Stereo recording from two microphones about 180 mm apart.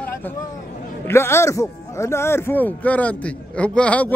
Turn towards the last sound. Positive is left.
turn(degrees=5)  # may be behind; listen again after turning